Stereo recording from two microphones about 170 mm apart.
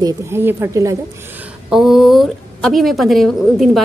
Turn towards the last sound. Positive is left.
turn(degrees=0)  # may be behind; listen again after turning